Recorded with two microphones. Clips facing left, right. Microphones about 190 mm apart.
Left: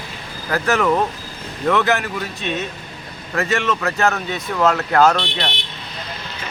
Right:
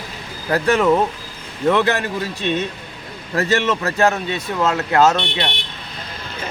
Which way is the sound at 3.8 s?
30° right (ahead or behind).